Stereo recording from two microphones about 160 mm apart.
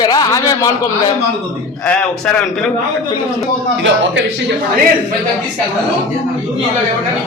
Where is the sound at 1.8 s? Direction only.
10° left (ahead or behind).